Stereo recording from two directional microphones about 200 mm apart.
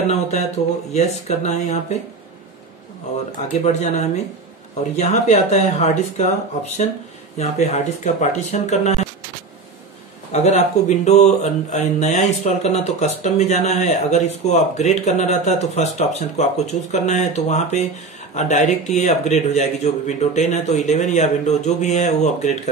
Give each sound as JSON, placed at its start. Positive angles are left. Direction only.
{"t": 0.6, "sound": "speech", "side_deg": 35}
{"t": 3.3, "sound": "speech", "side_deg": 35}
{"t": 10.3, "sound": "speech", "side_deg": 35}